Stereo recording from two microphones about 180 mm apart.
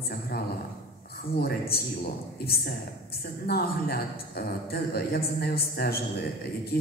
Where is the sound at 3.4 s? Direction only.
60° left (ahead or behind).